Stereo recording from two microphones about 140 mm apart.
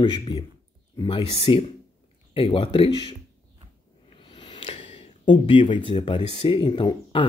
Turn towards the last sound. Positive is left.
turn(degrees=35)  # may be behind; listen again after turning